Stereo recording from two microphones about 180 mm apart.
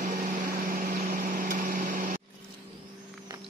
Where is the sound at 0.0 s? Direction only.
50° right (ahead or behind).